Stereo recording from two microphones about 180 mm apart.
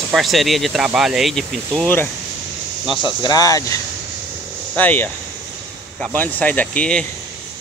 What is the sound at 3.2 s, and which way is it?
Speech, 20° left (ahead or behind).